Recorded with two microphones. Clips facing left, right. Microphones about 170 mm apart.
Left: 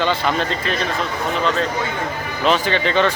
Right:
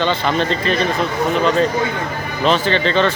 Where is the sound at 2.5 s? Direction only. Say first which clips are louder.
Right 2 dB; 10° left (ahead or behind).